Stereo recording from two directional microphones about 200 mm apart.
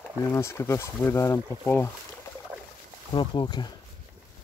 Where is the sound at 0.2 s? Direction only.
15° left (ahead or behind).